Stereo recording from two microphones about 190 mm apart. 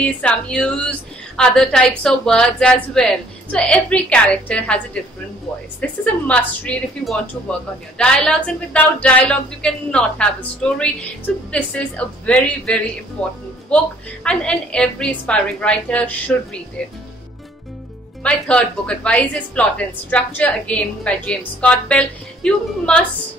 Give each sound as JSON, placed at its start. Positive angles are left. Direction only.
{"t": 0.0, "sound": "a woman's voice", "side_deg": 5}
{"t": 18.2, "sound": "a woman's voice", "side_deg": 5}